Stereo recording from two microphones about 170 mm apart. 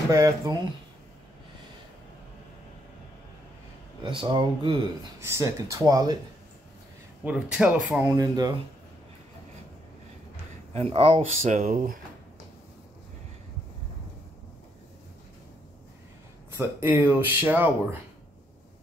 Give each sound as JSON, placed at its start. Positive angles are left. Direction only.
{"t": 0.1, "sound": "speech", "side_deg": -20}
{"t": 4.0, "sound": "speech", "side_deg": -30}
{"t": 5.2, "sound": "speech", "side_deg": -15}
{"t": 7.2, "sound": "speech", "side_deg": -5}
{"t": 8.2, "sound": "speech", "side_deg": -20}
{"t": 10.7, "sound": "speech", "side_deg": -35}
{"t": 16.5, "sound": "speech", "side_deg": -10}